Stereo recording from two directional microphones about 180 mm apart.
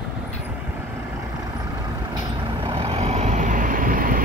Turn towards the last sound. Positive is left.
turn(degrees=-50)  # may be behind; listen again after turning